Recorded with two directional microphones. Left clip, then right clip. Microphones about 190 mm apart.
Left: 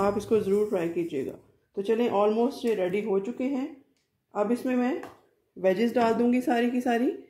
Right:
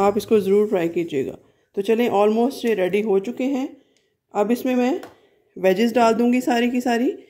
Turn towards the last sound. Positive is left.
turn(degrees=-30)  # may be behind; listen again after turning